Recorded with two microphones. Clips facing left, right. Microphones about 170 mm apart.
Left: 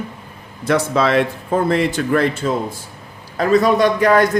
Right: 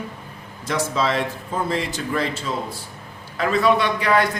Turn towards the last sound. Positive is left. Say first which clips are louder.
# left 6 dB
turn(degrees=45)  # may be behind; listen again after turning